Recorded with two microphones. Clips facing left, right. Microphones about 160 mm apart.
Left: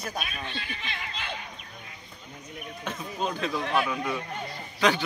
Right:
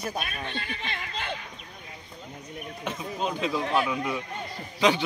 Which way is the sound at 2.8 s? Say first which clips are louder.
Right 1 dB; 15° right (ahead or behind).